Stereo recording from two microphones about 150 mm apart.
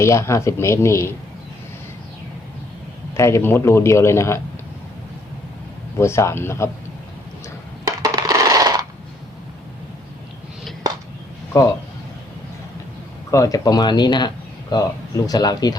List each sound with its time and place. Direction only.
0.0 s speech: 20° left (ahead or behind)
3.2 s a man's voice: 20° left (ahead or behind)
6.0 s a man's voice: 20° left (ahead or behind)
7.9 s coin: 25° right (ahead or behind)
11.5 s speech: 20° left (ahead or behind)
13.3 s speech: 20° left (ahead or behind)